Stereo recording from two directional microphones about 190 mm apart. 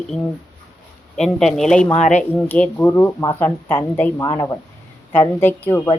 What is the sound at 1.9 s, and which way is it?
Speech, 40° left (ahead or behind).